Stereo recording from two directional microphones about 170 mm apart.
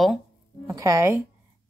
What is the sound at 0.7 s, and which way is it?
Speech, 20° right (ahead or behind).